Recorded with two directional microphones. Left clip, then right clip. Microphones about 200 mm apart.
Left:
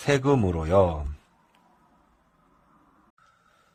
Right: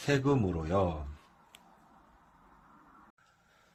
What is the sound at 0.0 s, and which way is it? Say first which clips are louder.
A man's voice: left 7 dB; 35° left (ahead or behind).